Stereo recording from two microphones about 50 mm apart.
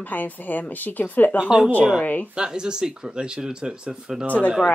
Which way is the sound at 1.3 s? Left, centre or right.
Centre.